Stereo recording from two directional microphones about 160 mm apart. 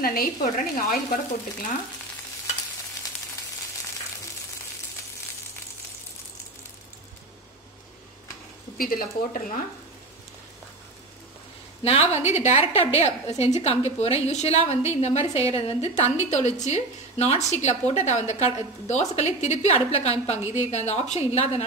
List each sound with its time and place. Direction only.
0.0 s a woman's voice: 65° left (ahead or behind)
8.7 s a woman's voice: 65° left (ahead or behind)
11.8 s a woman's voice: 40° left (ahead or behind)